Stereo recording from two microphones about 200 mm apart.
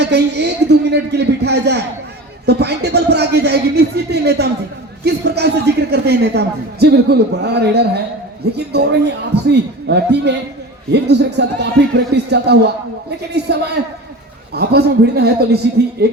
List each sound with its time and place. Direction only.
0.0 s a woman's voice: 55° right (ahead or behind)